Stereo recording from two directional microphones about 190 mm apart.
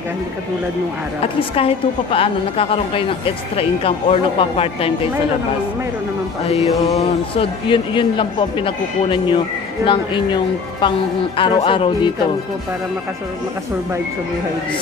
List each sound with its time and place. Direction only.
1.2 s a woman's voice: 30° left (ahead or behind)
6.7 s a woman's voice: 20° left (ahead or behind)